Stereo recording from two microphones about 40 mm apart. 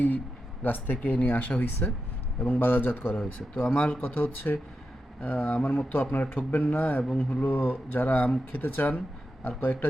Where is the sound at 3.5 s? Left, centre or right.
Left.